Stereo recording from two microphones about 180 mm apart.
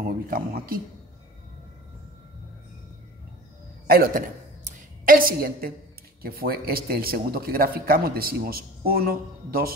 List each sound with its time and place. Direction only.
0.0 s speech: 55° right (ahead or behind)
3.8 s a man's voice: 55° right (ahead or behind)
4.6 s a sound: 50° right (ahead or behind)
6.2 s a man's voice: 55° right (ahead or behind)